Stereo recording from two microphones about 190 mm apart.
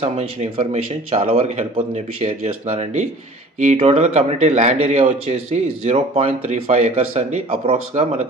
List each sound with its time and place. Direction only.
0.0 s speech: 35° right (ahead or behind)